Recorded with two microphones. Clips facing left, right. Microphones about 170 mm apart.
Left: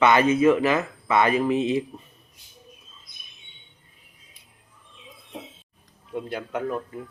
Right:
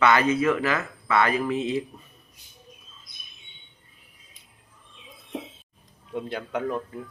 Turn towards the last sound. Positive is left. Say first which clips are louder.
# even
turn(degrees=5)  # may be behind; listen again after turning